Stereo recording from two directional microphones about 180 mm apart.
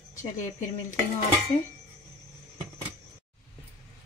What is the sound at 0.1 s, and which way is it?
Speech, 45° left (ahead or behind).